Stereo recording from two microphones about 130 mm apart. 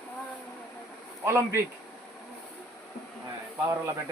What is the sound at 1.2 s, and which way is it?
Speech, 20° right (ahead or behind).